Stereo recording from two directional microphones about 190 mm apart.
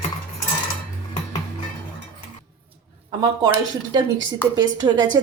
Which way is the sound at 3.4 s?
20° right (ahead or behind).